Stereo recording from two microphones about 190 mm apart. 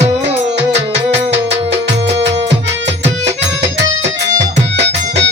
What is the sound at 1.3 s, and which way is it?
Music, 65° right (ahead or behind).